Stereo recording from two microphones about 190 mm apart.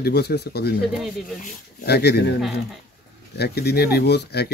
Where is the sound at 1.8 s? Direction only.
60° left (ahead or behind).